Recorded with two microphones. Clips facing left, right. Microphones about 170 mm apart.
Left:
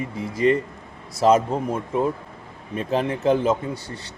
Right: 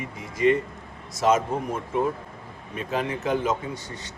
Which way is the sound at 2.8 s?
35° left (ahead or behind).